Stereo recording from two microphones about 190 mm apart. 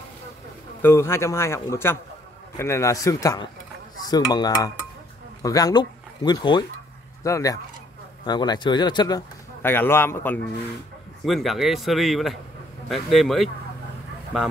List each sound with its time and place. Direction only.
0.8 s a man's voice: 15° left (ahead or behind)
11.2 s speech: centre (ahead or behind)